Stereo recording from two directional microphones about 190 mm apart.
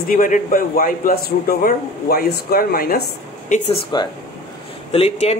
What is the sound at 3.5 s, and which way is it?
Speech, 30° left (ahead or behind).